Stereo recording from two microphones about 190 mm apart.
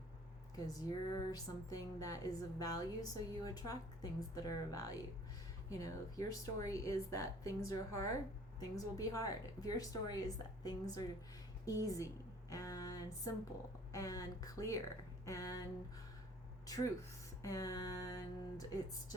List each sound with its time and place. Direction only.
0.5 s music: 20° left (ahead or behind)
5.7 s speech: 15° left (ahead or behind)
8.7 s music: 20° left (ahead or behind)
11.6 s a woman's voice: 20° left (ahead or behind)
12.5 s music: 15° left (ahead or behind)
13.9 s speech: 15° left (ahead or behind)
16.6 s music: 20° left (ahead or behind)
17.4 s speech: 20° left (ahead or behind)